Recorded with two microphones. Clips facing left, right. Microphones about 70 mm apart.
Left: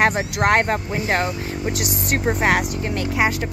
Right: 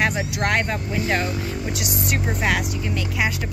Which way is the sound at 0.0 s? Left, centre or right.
Left.